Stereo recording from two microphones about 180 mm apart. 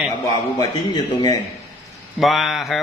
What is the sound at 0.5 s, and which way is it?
Speech, 25° left (ahead or behind).